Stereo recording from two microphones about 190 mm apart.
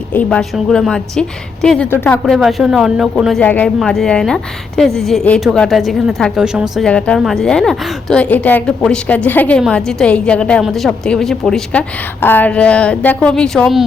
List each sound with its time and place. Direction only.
0.1 s a woman's voice: 5° left (ahead or behind)